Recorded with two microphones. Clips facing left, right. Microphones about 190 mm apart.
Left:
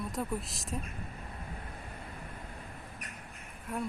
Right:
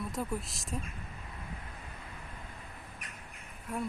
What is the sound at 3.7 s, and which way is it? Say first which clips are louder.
Speech: even; centre (ahead or behind).